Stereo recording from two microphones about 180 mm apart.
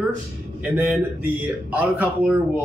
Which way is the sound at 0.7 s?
5° right (ahead or behind).